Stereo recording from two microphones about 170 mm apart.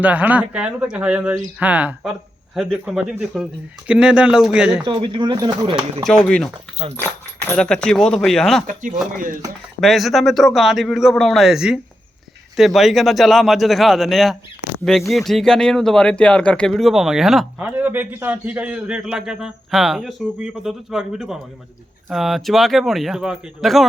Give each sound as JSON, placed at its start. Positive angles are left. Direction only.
{"t": 0.0, "sound": "speech", "side_deg": -10}
{"t": 4.9, "sound": "speech", "side_deg": -30}
{"t": 6.1, "sound": "speech", "side_deg": 5}
{"t": 7.5, "sound": "speech", "side_deg": 5}
{"t": 8.6, "sound": "speech", "side_deg": -50}
{"t": 9.8, "sound": "speech", "side_deg": 0}